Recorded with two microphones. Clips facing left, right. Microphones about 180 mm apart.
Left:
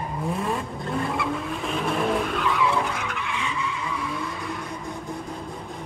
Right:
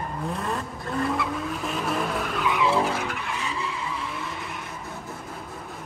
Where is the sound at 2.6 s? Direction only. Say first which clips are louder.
Right 2 dB; 30° right (ahead or behind).